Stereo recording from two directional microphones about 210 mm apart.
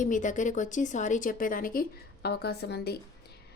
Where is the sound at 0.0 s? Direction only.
35° left (ahead or behind).